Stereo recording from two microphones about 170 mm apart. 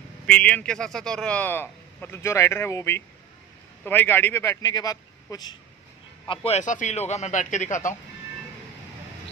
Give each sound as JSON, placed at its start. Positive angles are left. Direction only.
{"t": 0.3, "sound": "a man's voice", "side_deg": 10}
{"t": 6.2, "sound": "a man's voice", "side_deg": 35}